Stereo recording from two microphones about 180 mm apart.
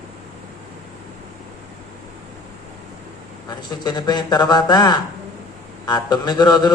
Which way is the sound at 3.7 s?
20° left (ahead or behind).